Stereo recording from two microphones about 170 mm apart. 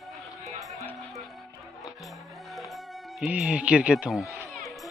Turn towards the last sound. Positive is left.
turn(degrees=0)  # may be behind; listen again after turning